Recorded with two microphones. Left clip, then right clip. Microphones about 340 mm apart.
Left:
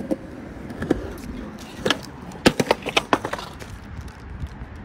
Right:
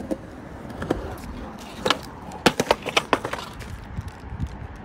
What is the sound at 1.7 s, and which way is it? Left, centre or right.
Vehicle, centre.